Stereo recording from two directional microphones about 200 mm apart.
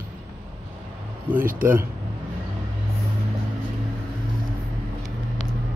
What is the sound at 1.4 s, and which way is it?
Speech, 45° right (ahead or behind).